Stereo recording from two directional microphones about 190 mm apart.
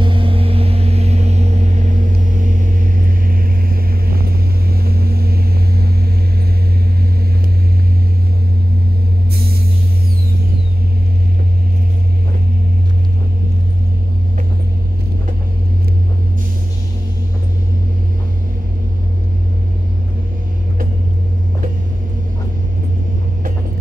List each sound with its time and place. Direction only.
0.0 s vehicle: 25° right (ahead or behind); by 5.9 s 55° right (ahead or behind)